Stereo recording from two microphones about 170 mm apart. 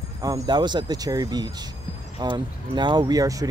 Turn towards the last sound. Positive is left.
turn(degrees=-20)  # may be behind; listen again after turning